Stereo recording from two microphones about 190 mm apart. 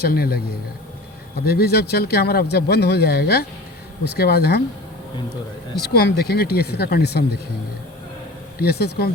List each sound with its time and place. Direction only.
0.0 s a man's voice: 55° left (ahead or behind)
1.5 s speech: 55° left (ahead or behind)
5.8 s speech: 60° left (ahead or behind)
8.5 s speech: 55° left (ahead or behind)